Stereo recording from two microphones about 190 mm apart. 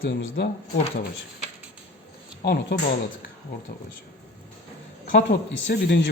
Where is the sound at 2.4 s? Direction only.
65° left (ahead or behind).